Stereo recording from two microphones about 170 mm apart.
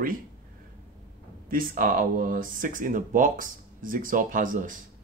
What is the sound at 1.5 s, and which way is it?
Speech, 55° right (ahead or behind).